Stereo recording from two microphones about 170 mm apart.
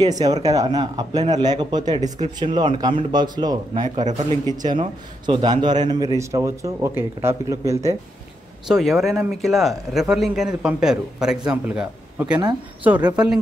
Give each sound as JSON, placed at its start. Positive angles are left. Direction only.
{"t": 0.0, "sound": "a man's voice", "side_deg": -20}
{"t": 8.6, "sound": "speech", "side_deg": 0}